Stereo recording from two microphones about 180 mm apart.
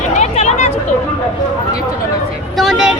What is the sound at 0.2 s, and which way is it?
Chatter, 40° left (ahead or behind).